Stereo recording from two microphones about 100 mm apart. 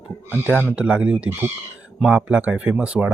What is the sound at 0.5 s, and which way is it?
Speech, 20° left (ahead or behind).